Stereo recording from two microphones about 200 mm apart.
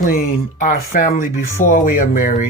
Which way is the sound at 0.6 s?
40° left (ahead or behind).